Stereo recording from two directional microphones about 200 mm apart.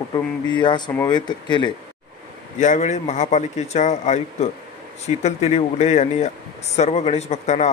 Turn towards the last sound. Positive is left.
turn(degrees=35)  # may be behind; listen again after turning